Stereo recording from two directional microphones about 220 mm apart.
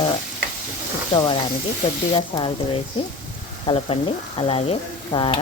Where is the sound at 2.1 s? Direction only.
25° left (ahead or behind).